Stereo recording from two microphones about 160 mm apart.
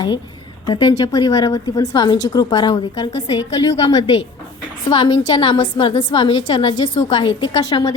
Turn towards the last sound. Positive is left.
turn(degrees=25)  # may be behind; listen again after turning